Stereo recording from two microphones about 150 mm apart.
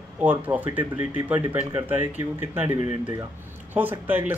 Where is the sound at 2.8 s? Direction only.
55° left (ahead or behind).